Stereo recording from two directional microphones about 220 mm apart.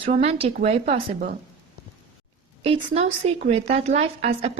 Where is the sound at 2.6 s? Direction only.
25° right (ahead or behind).